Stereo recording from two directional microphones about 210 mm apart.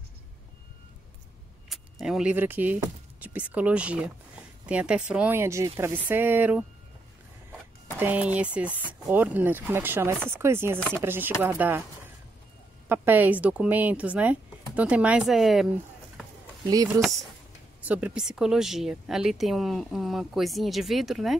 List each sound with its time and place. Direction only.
1.7 s speech: centre (ahead or behind)
8.0 s speech: 10° right (ahead or behind)
16.6 s speech: 15° right (ahead or behind)
17.8 s speech: 5° right (ahead or behind)